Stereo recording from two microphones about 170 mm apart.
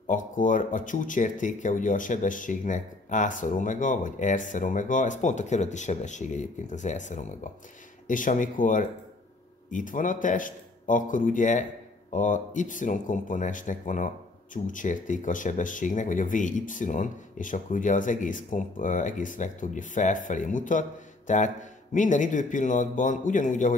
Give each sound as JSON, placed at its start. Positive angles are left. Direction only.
{"t": 0.0, "sound": "speech", "side_deg": 50}